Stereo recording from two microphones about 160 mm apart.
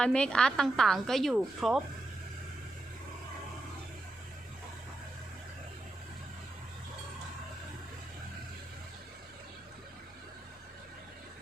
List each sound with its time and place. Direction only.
0.0 s a woman's voice: 5° left (ahead or behind)